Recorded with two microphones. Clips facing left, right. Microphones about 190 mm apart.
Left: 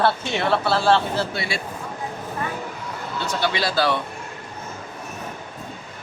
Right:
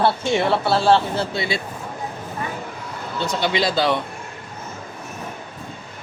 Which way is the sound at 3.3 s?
20° right (ahead or behind).